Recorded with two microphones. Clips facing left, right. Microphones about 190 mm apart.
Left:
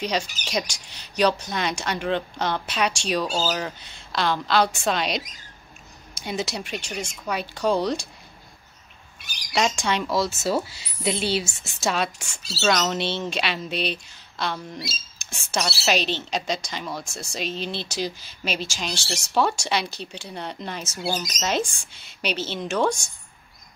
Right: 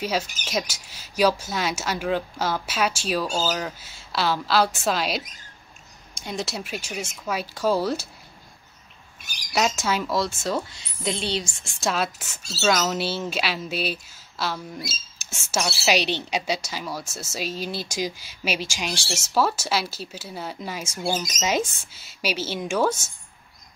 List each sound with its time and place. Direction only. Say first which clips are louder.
0.0 s speech: even; 5° right (ahead or behind)
9.5 s speech: even; 5° right (ahead or behind)